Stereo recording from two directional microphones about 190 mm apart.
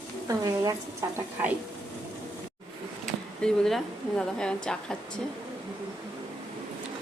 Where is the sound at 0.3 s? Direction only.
20° right (ahead or behind).